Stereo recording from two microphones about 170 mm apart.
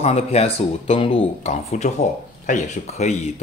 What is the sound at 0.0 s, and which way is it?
Speech, 40° left (ahead or behind).